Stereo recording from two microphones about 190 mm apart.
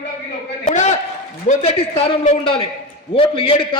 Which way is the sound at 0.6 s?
40° left (ahead or behind).